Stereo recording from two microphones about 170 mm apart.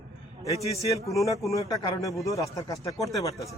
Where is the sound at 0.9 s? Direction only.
20° left (ahead or behind).